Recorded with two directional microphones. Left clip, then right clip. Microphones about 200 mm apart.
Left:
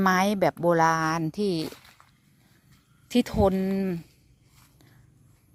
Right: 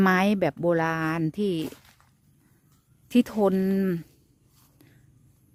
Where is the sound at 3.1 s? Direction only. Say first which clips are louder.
Even; 25° right (ahead or behind).